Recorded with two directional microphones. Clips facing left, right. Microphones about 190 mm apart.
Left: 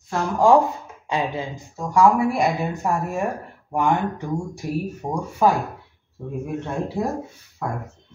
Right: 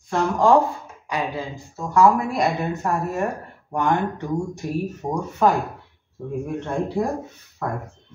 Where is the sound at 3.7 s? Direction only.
10° left (ahead or behind).